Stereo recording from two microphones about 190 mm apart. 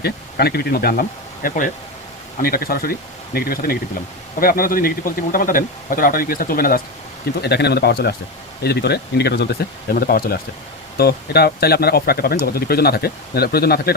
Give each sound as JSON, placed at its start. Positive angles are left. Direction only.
{"t": 0.0, "sound": "speech", "side_deg": 55}